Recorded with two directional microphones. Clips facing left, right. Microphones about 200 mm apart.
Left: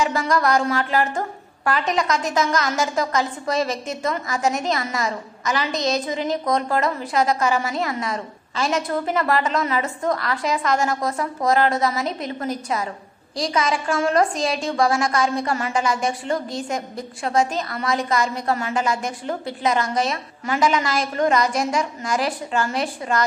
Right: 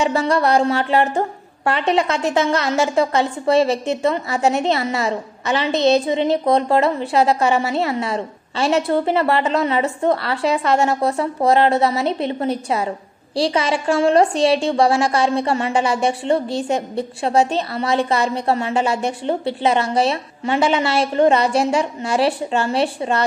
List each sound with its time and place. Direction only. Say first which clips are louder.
0.0 s a woman's voice: right 3 dB; 30° right (ahead or behind)